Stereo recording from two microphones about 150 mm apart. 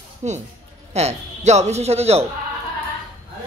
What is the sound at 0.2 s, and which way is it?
A man's voice, 50° right (ahead or behind).